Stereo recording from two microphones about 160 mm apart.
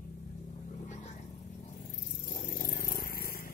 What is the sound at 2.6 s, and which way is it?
Purr, 70° left (ahead or behind).